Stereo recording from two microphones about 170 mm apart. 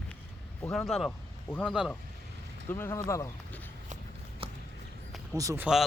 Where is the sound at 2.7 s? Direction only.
15° left (ahead or behind).